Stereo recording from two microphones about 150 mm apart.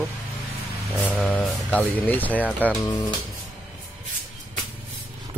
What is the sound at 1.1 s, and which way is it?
Mantra, centre (ahead or behind).